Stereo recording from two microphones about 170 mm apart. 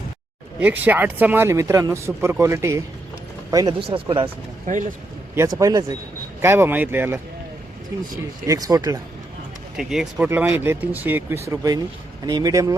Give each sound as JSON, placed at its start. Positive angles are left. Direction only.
{"t": 0.6, "sound": "speech", "side_deg": -10}
{"t": 3.8, "sound": "speech", "side_deg": -30}
{"t": 4.6, "sound": "speech", "side_deg": -45}
{"t": 5.5, "sound": "speech", "side_deg": -20}
{"t": 9.7, "sound": "speech", "side_deg": 0}